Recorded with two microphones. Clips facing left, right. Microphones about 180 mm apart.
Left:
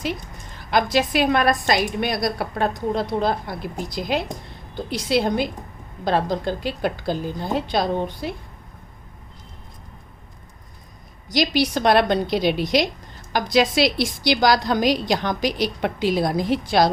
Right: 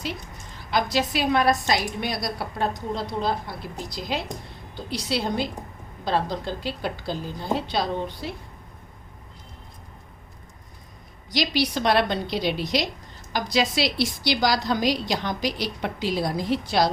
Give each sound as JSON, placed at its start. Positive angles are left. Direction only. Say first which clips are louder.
{"t": 0.7, "sound": "a woman's voice", "louder": "left 4 dB", "side_deg": 55}
{"t": 4.9, "sound": "a woman's voice", "louder": "left 6 dB", "side_deg": 50}
{"t": 11.3, "sound": "a woman's voice", "louder": "left 4 dB", "side_deg": 45}